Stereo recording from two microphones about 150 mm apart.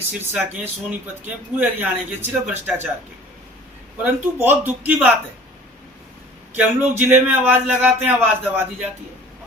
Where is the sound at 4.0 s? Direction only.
15° right (ahead or behind).